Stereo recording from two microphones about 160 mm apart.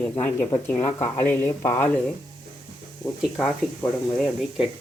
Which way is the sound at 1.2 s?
15° left (ahead or behind).